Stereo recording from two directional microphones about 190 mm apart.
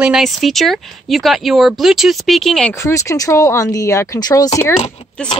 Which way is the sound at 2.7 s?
15° left (ahead or behind).